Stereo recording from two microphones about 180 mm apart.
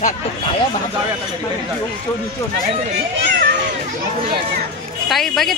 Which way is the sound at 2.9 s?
90° right.